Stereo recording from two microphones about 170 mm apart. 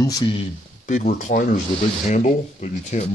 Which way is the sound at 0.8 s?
45° left (ahead or behind).